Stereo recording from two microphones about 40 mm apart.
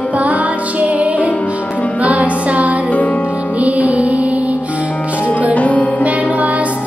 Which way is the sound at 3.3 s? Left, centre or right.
Right.